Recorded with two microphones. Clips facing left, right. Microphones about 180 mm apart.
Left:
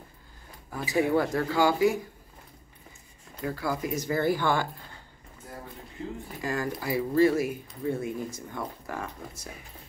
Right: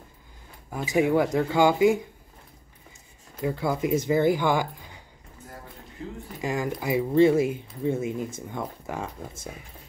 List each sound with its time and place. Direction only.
0.9 s speech: 15° right (ahead or behind)
3.4 s speech: 20° right (ahead or behind)
6.4 s speech: 20° right (ahead or behind)